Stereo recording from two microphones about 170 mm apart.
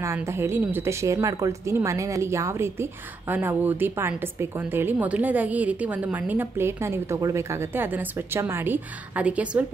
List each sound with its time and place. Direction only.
0.0 s a woman's voice: 15° right (ahead or behind)